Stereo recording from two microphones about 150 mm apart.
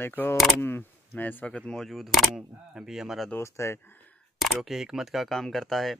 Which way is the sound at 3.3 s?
15° left (ahead or behind).